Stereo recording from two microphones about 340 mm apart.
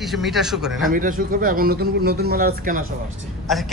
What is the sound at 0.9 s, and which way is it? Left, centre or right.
A man's voice, right.